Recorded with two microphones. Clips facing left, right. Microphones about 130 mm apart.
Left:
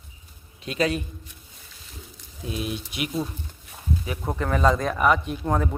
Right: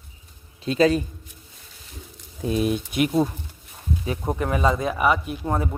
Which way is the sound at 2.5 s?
45° right (ahead or behind).